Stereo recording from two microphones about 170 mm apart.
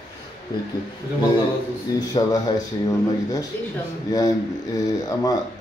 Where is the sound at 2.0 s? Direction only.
25° left (ahead or behind).